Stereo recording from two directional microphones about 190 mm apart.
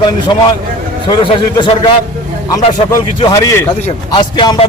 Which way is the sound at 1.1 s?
25° left (ahead or behind).